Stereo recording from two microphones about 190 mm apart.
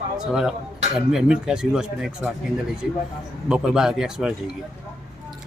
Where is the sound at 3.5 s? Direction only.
5° right (ahead or behind).